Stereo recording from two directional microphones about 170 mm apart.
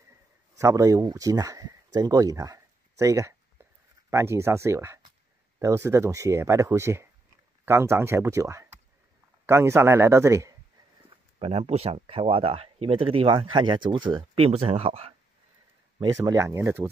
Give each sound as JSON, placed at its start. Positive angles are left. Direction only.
{"t": 0.6, "sound": "speech", "side_deg": -20}
{"t": 3.6, "sound": "a sound", "side_deg": -15}
{"t": 4.1, "sound": "speech", "side_deg": -15}
{"t": 11.3, "sound": "speech", "side_deg": -35}
{"t": 16.0, "sound": "speech", "side_deg": -20}